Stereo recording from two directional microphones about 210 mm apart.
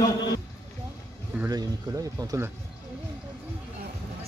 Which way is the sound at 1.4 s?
15° right (ahead or behind).